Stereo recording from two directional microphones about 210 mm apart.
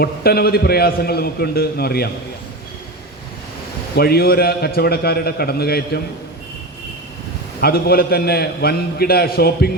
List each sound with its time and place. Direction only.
0.0 s a man's voice: 50° left (ahead or behind)
3.9 s a man's voice: 45° left (ahead or behind)
7.6 s a man's voice: 45° left (ahead or behind)